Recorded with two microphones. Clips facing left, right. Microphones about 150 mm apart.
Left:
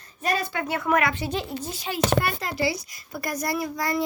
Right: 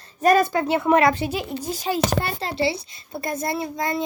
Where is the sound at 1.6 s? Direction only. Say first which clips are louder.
Right 6 dB; 40° right (ahead or behind).